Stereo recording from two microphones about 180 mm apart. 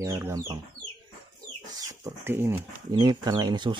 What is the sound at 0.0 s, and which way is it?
Speech, 15° right (ahead or behind).